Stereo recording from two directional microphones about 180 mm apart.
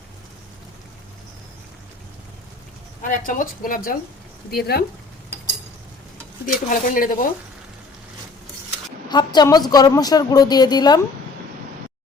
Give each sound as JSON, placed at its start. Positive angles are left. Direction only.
{"t": 3.0, "sound": "a woman's voice", "side_deg": 45}
{"t": 6.7, "sound": "a woman's voice", "side_deg": 50}
{"t": 9.0, "sound": "a woman's voice", "side_deg": 25}